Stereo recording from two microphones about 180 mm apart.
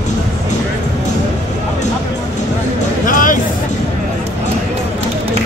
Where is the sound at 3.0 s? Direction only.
50° left (ahead or behind).